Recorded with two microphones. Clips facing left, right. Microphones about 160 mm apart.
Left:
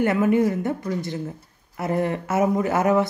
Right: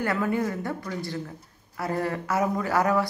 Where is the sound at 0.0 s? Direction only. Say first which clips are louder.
Left 7 dB; 20° left (ahead or behind).